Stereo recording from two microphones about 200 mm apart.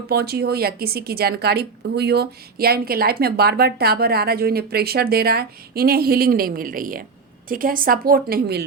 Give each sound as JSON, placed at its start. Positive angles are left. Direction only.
{"t": 0.1, "sound": "a woman's voice", "side_deg": -50}